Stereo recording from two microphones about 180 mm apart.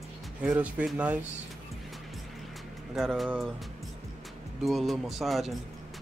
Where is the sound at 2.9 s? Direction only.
Centre (ahead or behind).